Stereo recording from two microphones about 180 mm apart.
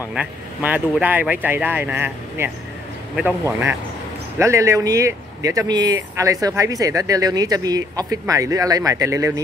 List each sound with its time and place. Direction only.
0.1 s speech: 5° right (ahead or behind)